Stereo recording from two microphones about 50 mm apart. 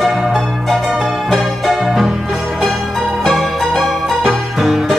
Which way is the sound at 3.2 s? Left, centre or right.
Centre.